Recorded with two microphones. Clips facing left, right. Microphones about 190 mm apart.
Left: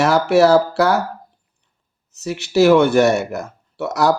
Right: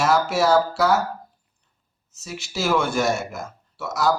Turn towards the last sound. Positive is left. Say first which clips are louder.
# left 5 dB
turn(degrees=65)  # may be behind; listen again after turning